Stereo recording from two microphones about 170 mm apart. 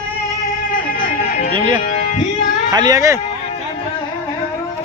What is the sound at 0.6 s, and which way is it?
Music, 55° left (ahead or behind).